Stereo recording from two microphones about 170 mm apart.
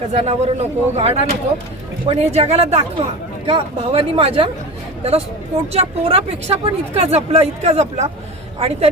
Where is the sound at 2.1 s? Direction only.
40° right (ahead or behind).